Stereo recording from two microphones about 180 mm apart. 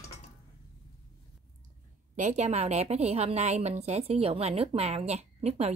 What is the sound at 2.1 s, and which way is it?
A woman's voice, 40° right (ahead or behind).